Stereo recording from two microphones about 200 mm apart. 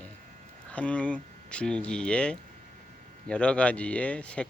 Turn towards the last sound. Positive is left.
turn(degrees=5)  # may be behind; listen again after turning